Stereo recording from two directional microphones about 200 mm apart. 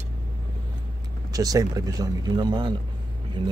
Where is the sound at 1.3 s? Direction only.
20° right (ahead or behind).